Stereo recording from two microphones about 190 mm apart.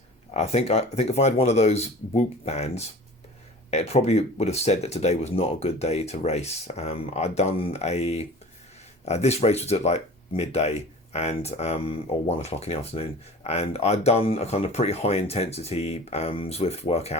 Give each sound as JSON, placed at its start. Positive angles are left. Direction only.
{"t": 0.3, "sound": "speech", "side_deg": 35}